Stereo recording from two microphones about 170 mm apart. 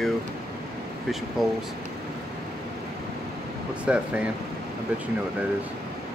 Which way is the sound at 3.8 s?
5° right (ahead or behind).